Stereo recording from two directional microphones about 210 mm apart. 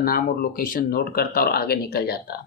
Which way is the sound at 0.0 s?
45° left (ahead or behind).